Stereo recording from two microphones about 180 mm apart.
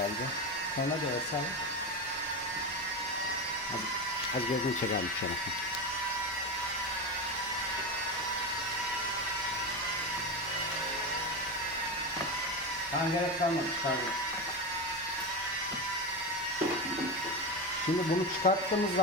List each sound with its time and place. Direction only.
18.4 s speech: 50° left (ahead or behind)